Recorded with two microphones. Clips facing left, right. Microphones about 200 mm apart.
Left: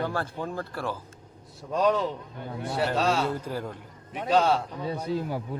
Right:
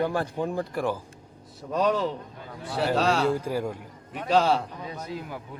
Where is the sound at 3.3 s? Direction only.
10° right (ahead or behind).